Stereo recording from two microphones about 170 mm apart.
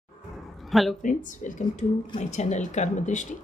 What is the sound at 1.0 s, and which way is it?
A woman's voice, 50° left (ahead or behind).